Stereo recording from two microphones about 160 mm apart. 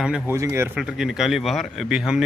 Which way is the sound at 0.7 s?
5° right (ahead or behind).